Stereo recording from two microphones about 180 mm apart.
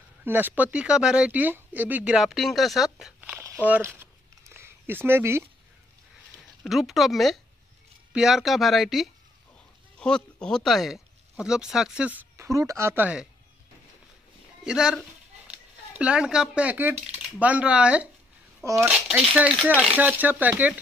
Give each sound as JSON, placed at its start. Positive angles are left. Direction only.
{"t": 0.2, "sound": "speech", "side_deg": -10}
{"t": 6.6, "sound": "speech", "side_deg": 0}
{"t": 14.6, "sound": "speech", "side_deg": -5}